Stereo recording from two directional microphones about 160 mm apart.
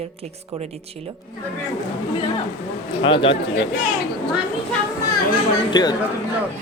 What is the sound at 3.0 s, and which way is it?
Speech, 30° left (ahead or behind).